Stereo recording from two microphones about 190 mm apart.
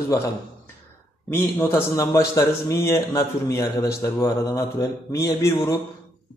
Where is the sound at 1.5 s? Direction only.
15° left (ahead or behind).